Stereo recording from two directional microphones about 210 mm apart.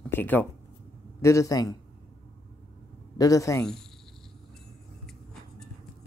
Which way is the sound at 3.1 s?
15° left (ahead or behind).